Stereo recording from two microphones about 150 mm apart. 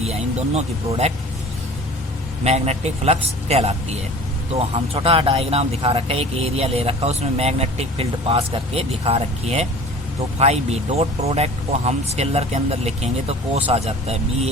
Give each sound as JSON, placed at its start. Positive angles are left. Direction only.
{"t": 0.0, "sound": "speech", "side_deg": -45}
{"t": 2.4, "sound": "speech", "side_deg": -45}
{"t": 4.9, "sound": "speech", "side_deg": -40}